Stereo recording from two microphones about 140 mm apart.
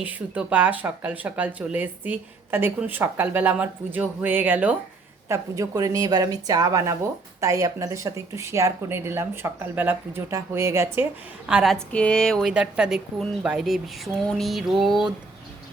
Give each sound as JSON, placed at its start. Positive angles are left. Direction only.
{"t": 0.0, "sound": "speech", "side_deg": -10}
{"t": 5.3, "sound": "speech", "side_deg": -25}
{"t": 11.4, "sound": "speech", "side_deg": -5}
{"t": 11.9, "sound": "speech", "side_deg": 10}